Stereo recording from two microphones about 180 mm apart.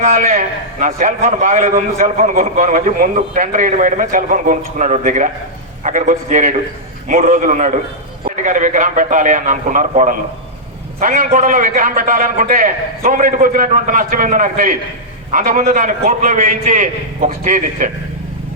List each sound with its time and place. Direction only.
0.0 s a man's voice: 45° right (ahead or behind)